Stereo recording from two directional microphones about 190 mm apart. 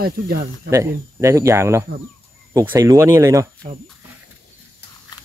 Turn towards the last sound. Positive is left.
turn(degrees=-15)  # may be behind; listen again after turning